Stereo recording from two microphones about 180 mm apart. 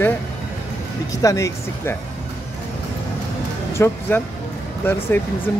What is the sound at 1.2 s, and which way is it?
Speech, 15° left (ahead or behind).